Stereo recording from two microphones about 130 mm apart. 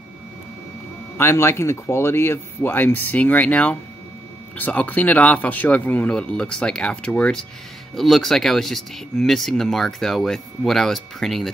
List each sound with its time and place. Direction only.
1.1 s speech: 20° left (ahead or behind); by 11.5 s centre (ahead or behind)